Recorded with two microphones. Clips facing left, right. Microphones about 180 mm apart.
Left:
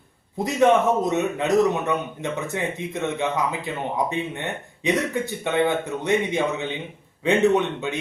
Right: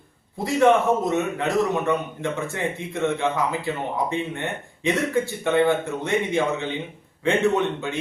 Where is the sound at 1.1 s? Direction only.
20° left (ahead or behind).